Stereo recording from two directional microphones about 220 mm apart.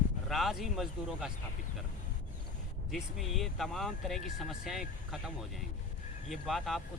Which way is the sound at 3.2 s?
Centre (ahead or behind).